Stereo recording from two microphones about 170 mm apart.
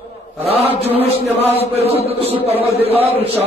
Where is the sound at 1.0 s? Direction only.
35° left (ahead or behind).